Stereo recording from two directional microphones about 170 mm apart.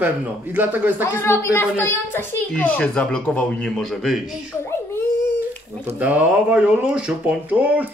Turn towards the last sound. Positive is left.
turn(degrees=-10)  # may be behind; listen again after turning